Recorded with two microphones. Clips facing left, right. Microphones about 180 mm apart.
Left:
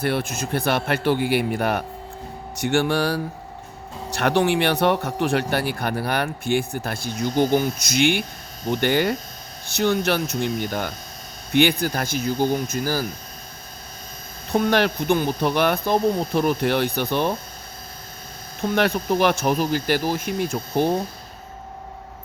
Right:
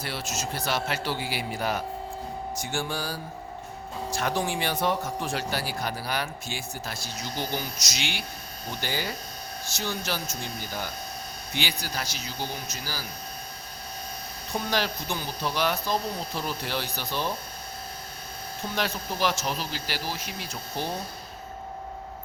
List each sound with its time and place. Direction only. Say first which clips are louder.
0.0 s speech: left 9 dB; 55° left (ahead or behind)
2.6 s music: left 13 dB; 70° left (ahead or behind)
4.1 s speech: left 9 dB; 70° left (ahead or behind); by 13.1 s 50° left (ahead or behind)
14.5 s speech: left 9 dB; 60° left (ahead or behind)
18.7 s speech: left 11 dB; 60° left (ahead or behind)